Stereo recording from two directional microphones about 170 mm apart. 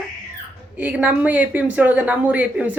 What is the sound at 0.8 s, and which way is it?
Speech, 10° right (ahead or behind).